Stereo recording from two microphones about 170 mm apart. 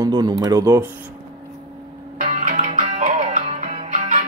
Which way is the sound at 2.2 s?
40° right (ahead or behind).